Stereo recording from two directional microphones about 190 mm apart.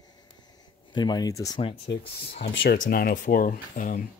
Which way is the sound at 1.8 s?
65° left (ahead or behind).